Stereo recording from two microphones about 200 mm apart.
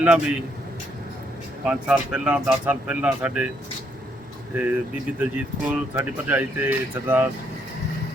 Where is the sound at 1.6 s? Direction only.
5° right (ahead or behind).